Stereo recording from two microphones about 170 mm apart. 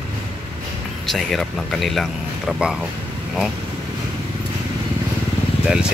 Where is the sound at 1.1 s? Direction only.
Centre (ahead or behind).